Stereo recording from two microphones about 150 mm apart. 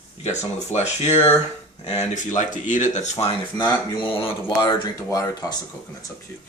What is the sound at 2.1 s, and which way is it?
Speech, 55° left (ahead or behind).